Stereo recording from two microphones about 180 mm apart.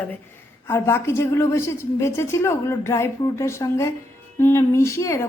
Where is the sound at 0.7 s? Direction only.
15° left (ahead or behind).